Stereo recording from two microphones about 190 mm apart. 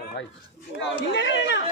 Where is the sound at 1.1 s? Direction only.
75° left (ahead or behind).